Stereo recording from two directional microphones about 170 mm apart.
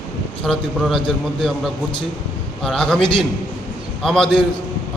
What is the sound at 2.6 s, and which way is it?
A man's voice, 5° left (ahead or behind).